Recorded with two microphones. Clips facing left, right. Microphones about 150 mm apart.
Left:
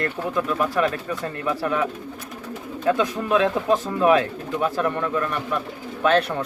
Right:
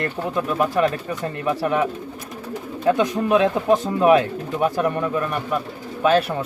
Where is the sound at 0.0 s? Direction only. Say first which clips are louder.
Right 1 dB; 20° right (ahead or behind).